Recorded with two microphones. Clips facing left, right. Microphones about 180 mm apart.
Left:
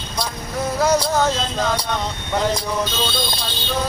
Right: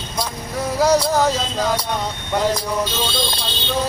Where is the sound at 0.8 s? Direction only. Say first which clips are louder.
Right 2 dB; 10° right (ahead or behind).